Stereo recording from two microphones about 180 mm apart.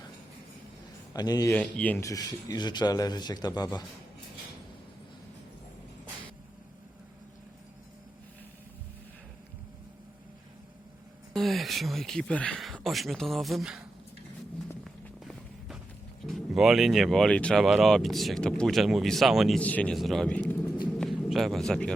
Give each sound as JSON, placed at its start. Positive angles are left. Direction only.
{"t": 1.1, "sound": "speech", "side_deg": 20}
{"t": 1.5, "sound": "speech", "side_deg": 10}
{"t": 11.3, "sound": "speech", "side_deg": 0}
{"t": 14.8, "sound": "music", "side_deg": 0}
{"t": 16.2, "sound": "speech", "side_deg": 0}
{"t": 20.8, "sound": "a sound", "side_deg": 0}